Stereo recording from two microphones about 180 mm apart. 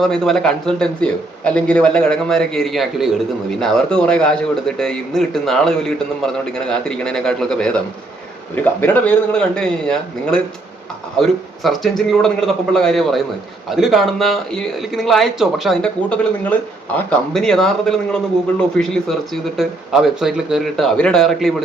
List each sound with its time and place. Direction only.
0.0 s speech: centre (ahead or behind)